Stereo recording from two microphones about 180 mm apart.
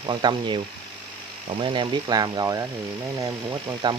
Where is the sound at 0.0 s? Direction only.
25° right (ahead or behind).